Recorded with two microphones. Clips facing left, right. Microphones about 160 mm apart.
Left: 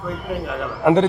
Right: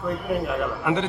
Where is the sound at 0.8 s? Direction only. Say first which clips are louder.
Left 13 dB; 40° left (ahead or behind).